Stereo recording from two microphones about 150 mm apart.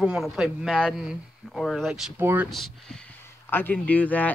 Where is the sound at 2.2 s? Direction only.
15° right (ahead or behind).